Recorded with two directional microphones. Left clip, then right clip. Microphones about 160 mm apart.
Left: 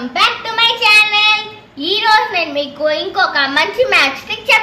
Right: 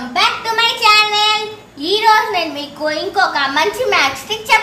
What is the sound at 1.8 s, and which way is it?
A woman's voice, 40° left (ahead or behind).